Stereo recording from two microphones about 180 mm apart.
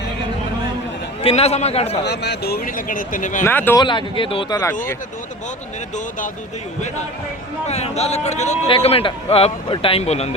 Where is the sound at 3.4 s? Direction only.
10° left (ahead or behind).